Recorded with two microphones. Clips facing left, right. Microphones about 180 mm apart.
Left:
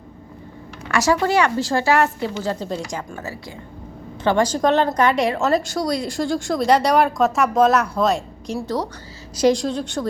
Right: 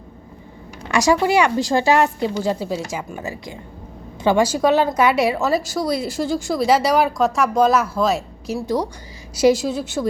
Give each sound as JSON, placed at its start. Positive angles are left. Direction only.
{"t": 0.9, "sound": "a woman's voice", "side_deg": -15}